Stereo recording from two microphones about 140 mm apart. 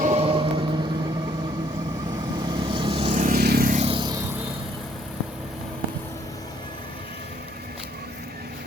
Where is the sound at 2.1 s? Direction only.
30° right (ahead or behind).